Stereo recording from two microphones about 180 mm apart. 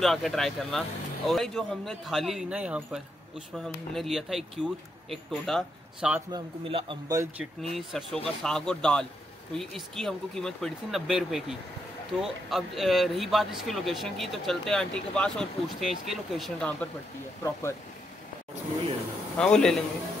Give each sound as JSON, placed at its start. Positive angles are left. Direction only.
{"t": 0.0, "sound": "speech", "side_deg": 0}
{"t": 6.3, "sound": "a man's voice", "side_deg": -30}
{"t": 7.1, "sound": "speech", "side_deg": -15}
{"t": 7.7, "sound": "speech", "side_deg": 0}
{"t": 17.4, "sound": "speech", "side_deg": 15}
{"t": 19.3, "sound": "speech", "side_deg": 5}